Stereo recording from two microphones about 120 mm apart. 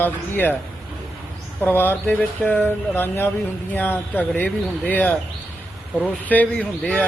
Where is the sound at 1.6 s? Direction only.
15° left (ahead or behind).